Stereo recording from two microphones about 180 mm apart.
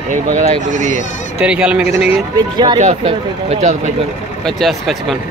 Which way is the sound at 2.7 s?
40° right (ahead or behind).